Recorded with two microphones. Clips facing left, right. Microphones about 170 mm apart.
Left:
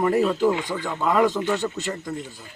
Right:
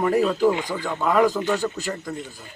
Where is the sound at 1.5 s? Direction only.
20° left (ahead or behind).